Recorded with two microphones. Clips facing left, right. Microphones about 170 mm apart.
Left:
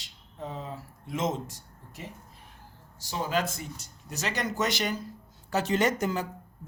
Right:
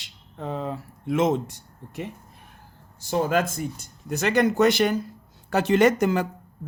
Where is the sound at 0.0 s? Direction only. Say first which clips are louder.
Right 5 dB; 65° right (ahead or behind).